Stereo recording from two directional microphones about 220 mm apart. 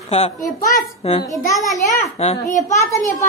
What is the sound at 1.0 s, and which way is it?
A child's voice, 25° left (ahead or behind).